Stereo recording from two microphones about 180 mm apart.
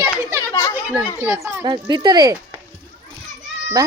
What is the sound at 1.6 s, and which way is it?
Speech, 25° right (ahead or behind).